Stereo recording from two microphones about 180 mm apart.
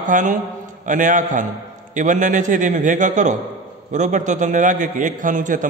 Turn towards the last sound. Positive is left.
turn(degrees=-45)  # may be behind; listen again after turning